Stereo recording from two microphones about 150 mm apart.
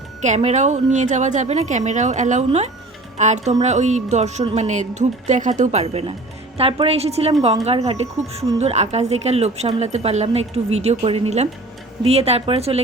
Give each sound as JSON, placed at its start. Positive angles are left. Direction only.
{"t": 0.2, "sound": "a woman's voice", "side_deg": -50}